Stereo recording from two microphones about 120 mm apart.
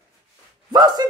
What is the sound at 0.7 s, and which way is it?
Speech, 35° right (ahead or behind).